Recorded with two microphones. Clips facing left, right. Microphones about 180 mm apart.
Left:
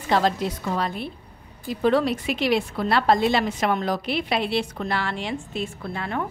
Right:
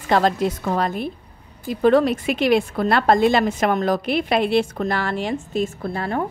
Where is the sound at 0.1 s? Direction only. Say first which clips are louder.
Right 4 dB; 50° right (ahead or behind).